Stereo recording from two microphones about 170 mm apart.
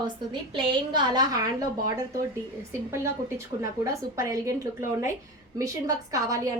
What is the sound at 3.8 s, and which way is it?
A woman's voice, 20° right (ahead or behind).